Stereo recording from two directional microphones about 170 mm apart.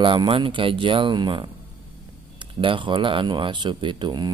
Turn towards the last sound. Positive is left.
turn(degrees=-25)  # may be behind; listen again after turning